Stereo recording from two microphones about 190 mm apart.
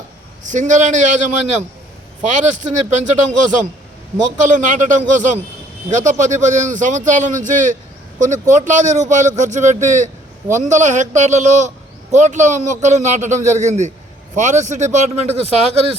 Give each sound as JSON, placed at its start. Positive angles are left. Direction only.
{"t": 0.4, "sound": "speech", "side_deg": -40}